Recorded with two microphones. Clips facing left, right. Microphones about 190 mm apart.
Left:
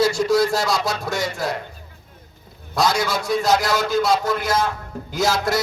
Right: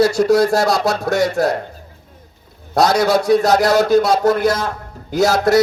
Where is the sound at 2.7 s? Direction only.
65° right (ahead or behind).